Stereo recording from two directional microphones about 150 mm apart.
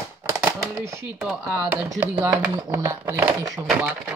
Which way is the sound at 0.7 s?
20° right (ahead or behind).